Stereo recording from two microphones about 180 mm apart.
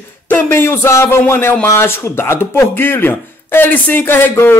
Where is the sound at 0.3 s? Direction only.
15° left (ahead or behind).